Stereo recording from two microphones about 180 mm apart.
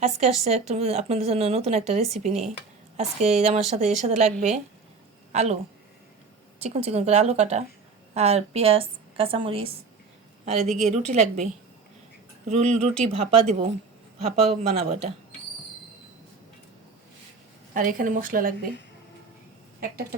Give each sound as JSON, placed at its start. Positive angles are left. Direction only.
{"t": 0.0, "sound": "a woman's voice", "side_deg": -35}
{"t": 6.6, "sound": "a woman's voice", "side_deg": -35}
{"t": 10.9, "sound": "a woman's voice", "side_deg": -40}
{"t": 12.5, "sound": "a woman's voice", "side_deg": -40}
{"t": 17.7, "sound": "speech", "side_deg": -50}